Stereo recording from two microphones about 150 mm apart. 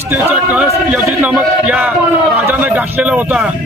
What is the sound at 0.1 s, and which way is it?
A man's voice, 10° right (ahead or behind).